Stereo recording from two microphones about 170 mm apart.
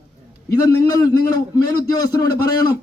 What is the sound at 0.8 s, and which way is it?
A man's voice, 20° left (ahead or behind).